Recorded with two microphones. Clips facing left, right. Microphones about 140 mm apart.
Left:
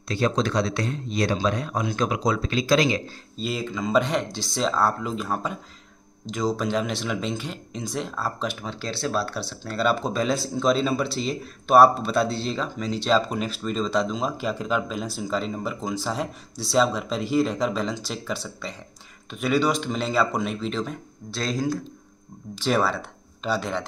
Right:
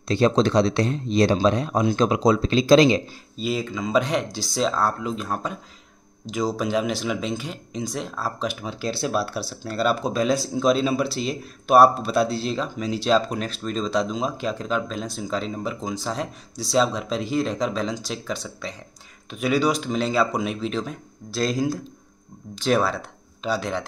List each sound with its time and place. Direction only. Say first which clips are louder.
0.1 s speech: right 5 dB; 25° right (ahead or behind)
3.3 s speech: right 2 dB; centre (ahead or behind)